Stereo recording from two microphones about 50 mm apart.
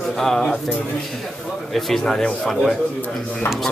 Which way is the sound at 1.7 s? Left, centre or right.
Centre.